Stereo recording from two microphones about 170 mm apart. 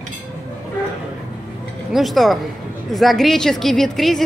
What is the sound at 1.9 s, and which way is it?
A man's voice, centre (ahead or behind).